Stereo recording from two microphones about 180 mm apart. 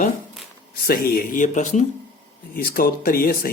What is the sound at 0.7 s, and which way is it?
Speech, 55° left (ahead or behind).